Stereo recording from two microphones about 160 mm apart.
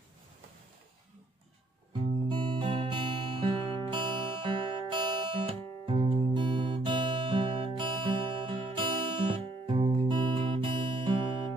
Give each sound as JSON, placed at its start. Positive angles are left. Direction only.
{"t": 2.2, "sound": "music", "side_deg": -30}